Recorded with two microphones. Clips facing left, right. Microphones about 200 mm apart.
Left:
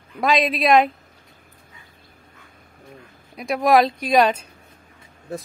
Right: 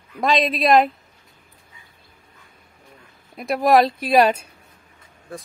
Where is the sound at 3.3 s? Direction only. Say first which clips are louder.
Right 1 dB; centre (ahead or behind).